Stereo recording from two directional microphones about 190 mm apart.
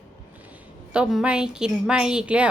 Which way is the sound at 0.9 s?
5° right (ahead or behind).